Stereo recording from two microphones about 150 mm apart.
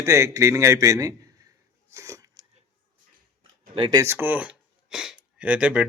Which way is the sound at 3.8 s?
30° right (ahead or behind).